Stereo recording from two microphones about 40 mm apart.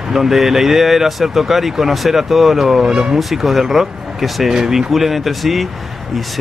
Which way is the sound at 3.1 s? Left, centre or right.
Centre.